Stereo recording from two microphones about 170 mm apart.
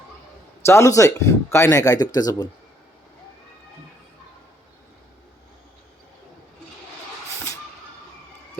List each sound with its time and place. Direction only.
0.6 s speech: 15° left (ahead or behind)